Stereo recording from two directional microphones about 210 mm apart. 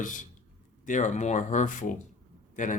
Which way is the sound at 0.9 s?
35° left (ahead or behind).